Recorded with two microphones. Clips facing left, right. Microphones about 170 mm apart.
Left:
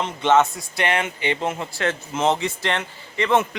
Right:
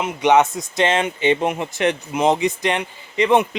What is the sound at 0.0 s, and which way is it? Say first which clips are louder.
Speech: right 2 dB; 15° right (ahead or behind).